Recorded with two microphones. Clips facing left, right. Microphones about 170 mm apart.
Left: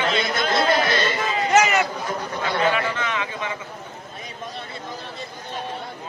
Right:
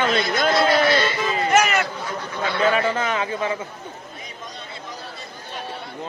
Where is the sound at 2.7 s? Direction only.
40° right (ahead or behind).